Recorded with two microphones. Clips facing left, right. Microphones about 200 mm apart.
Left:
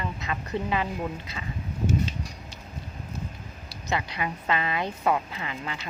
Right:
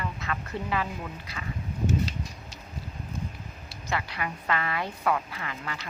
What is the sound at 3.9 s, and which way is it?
A woman's voice, 20° left (ahead or behind).